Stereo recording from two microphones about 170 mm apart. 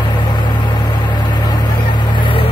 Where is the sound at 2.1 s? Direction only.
30° left (ahead or behind).